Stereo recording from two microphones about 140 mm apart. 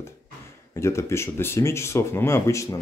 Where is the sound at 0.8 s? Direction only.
20° left (ahead or behind).